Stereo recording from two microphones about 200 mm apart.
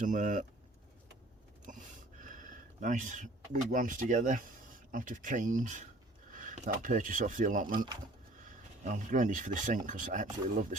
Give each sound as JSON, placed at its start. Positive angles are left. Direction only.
{"t": 0.0, "sound": "speech", "side_deg": -40}
{"t": 1.7, "sound": "gasp", "side_deg": -40}
{"t": 2.2, "sound": "speech", "side_deg": -40}
{"t": 8.8, "sound": "speech", "side_deg": -40}